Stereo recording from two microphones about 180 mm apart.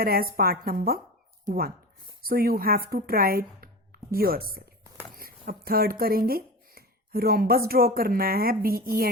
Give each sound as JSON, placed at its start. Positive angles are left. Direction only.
{"t": 0.0, "sound": "a woman's voice", "side_deg": -55}